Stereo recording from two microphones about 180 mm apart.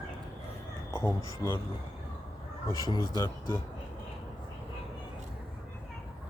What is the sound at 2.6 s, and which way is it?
Speech, 20° left (ahead or behind).